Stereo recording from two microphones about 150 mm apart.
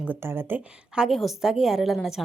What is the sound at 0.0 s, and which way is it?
Speech, 15° right (ahead or behind).